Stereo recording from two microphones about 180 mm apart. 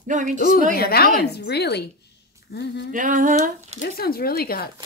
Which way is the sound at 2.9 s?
45° right (ahead or behind).